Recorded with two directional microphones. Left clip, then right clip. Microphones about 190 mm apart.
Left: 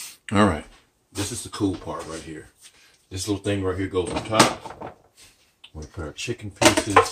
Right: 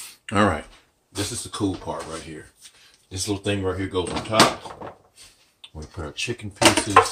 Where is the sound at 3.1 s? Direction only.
20° left (ahead or behind).